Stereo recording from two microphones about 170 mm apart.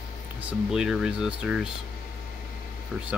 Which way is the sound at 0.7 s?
5° right (ahead or behind).